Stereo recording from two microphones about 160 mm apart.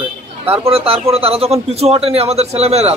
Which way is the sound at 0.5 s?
35° right (ahead or behind).